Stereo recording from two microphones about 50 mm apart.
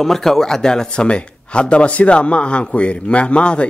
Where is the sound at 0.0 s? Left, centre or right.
Centre.